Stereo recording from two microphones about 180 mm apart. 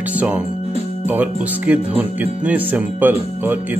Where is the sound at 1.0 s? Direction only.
10° right (ahead or behind).